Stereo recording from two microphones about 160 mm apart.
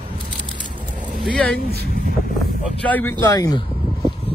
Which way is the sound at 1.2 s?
5° left (ahead or behind).